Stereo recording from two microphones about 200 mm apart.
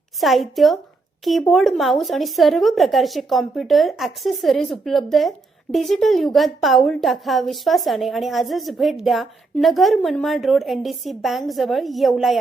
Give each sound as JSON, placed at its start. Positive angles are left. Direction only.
{"t": 0.2, "sound": "a woman's voice", "side_deg": 0}